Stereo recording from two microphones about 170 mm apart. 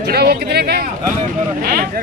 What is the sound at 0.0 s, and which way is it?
Speech, 70° right (ahead or behind).